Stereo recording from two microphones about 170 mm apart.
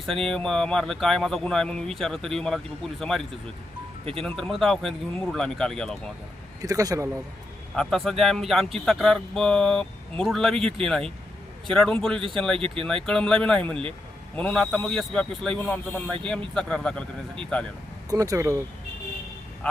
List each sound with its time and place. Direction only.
0.0 s speech: centre (ahead or behind)
6.6 s speech: 20° right (ahead or behind)
7.8 s speech: centre (ahead or behind)
10.6 s speech: 35° right (ahead or behind)
10.8 s speech: centre (ahead or behind)
12.5 s speech: 30° right (ahead or behind)
13.1 s speech: 5° left (ahead or behind)
18.1 s speech: 20° right (ahead or behind)